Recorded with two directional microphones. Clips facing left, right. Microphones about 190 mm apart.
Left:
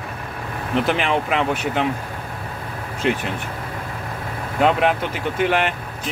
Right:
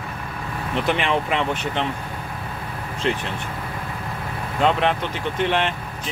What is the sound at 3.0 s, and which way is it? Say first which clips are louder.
Speech: left 3 dB; 5° left (ahead or behind).